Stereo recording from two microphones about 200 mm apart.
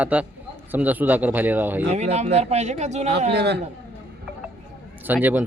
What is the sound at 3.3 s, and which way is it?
Speech, 55° right (ahead or behind).